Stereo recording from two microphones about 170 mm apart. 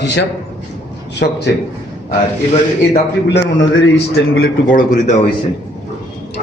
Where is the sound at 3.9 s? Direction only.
70° left (ahead or behind).